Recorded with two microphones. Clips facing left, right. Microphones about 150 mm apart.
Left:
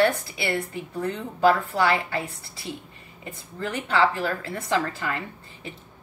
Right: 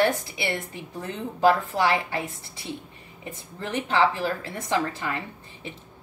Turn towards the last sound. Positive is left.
turn(degrees=-20)  # may be behind; listen again after turning